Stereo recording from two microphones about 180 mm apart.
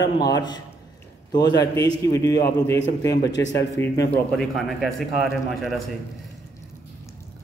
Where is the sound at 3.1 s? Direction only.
65° left (ahead or behind).